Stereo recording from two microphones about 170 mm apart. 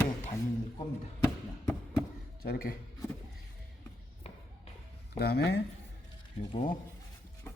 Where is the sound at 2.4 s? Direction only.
60° left (ahead or behind).